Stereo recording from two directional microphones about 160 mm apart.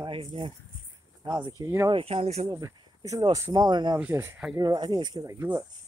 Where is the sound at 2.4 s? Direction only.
25° right (ahead or behind).